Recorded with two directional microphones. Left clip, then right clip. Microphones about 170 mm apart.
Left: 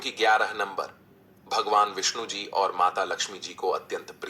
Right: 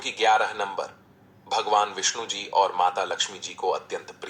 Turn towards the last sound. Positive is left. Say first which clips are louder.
# even
turn(degrees=20)  # may be behind; listen again after turning